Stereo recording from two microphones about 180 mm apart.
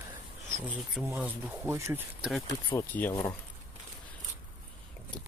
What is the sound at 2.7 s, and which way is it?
Speech, 10° left (ahead or behind).